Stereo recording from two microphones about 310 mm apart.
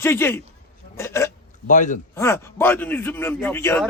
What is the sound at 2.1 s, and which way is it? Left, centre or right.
A man's voice, centre.